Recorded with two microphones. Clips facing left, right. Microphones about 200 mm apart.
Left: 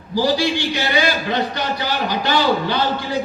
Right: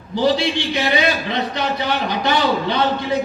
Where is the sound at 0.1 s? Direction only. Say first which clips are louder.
Even; 25° right (ahead or behind).